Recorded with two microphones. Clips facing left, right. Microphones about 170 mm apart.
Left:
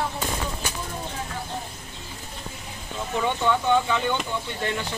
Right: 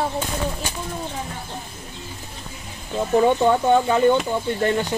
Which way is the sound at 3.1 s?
40° right (ahead or behind).